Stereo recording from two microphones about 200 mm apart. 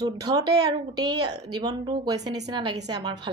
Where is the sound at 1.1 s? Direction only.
55° right (ahead or behind).